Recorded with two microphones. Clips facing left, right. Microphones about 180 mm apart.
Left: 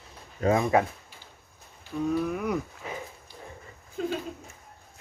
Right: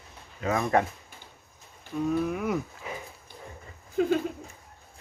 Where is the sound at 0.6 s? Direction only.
5° left (ahead or behind).